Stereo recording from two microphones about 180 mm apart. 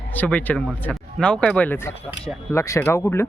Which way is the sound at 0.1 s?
10° left (ahead or behind).